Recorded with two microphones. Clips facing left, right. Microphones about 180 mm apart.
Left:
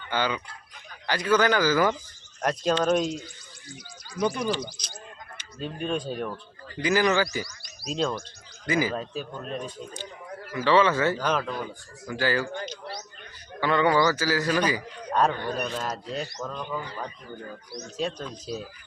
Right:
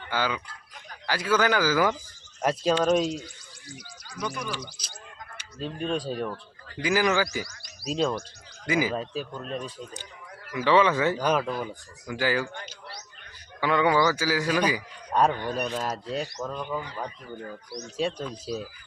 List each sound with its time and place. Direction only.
0.1 s a man's voice: 5° right (ahead or behind)
4.2 s speech: 30° left (ahead or behind)
5.5 s a man's voice: 5° left (ahead or behind); by 12.5 s 15° right (ahead or behind)
13.6 s a man's voice: 10° right (ahead or behind)
17.9 s a man's voice: 10° right (ahead or behind)